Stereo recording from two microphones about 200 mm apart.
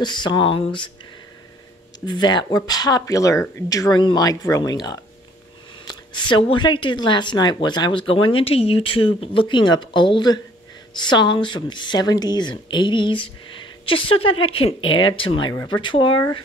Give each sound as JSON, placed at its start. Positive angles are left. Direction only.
{"t": 0.0, "sound": "speech", "side_deg": 20}
{"t": 2.0, "sound": "speech", "side_deg": 20}